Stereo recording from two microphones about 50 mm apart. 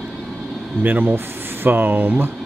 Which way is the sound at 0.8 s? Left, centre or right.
Right.